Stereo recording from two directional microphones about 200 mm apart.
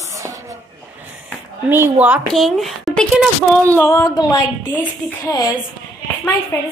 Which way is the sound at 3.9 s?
15° left (ahead or behind).